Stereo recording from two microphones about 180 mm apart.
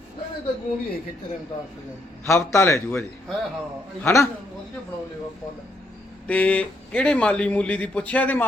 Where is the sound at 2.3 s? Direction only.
15° left (ahead or behind).